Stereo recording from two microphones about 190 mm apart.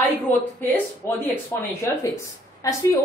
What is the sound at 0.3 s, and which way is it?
A woman's voice, 10° left (ahead or behind).